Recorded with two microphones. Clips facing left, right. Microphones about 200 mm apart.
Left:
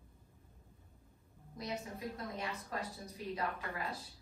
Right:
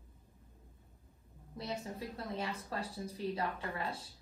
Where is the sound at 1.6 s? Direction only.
30° right (ahead or behind).